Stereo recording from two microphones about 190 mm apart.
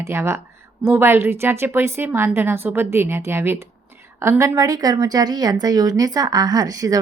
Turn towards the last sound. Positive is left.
turn(degrees=-20)  # may be behind; listen again after turning